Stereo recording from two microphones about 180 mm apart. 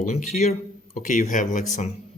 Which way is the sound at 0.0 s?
45° left (ahead or behind).